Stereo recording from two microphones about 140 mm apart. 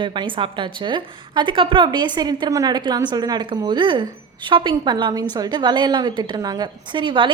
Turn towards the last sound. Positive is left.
turn(degrees=-35)  # may be behind; listen again after turning